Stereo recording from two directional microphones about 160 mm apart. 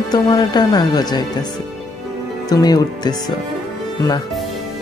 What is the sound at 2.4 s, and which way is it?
Speech, 25° left (ahead or behind).